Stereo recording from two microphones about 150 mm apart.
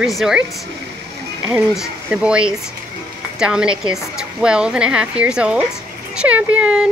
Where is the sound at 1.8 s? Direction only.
5° right (ahead or behind).